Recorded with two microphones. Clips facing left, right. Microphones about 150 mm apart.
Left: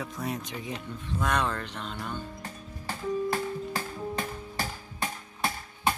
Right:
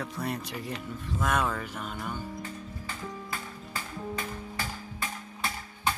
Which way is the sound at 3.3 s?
40° left (ahead or behind).